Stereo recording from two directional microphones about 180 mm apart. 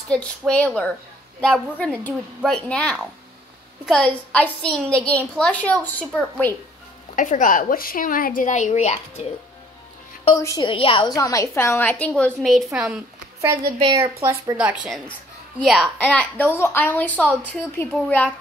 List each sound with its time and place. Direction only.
0.1 s a woman's voice: 5° left (ahead or behind)
7.2 s a woman's voice: 45° left (ahead or behind)
10.3 s a woman's voice: 20° left (ahead or behind); by 13.0 s 5° right (ahead or behind)
13.7 s a woman's voice: 30° right (ahead or behind)
14.6 s a woman's voice: 5° right (ahead or behind); by 18.3 s 10° left (ahead or behind)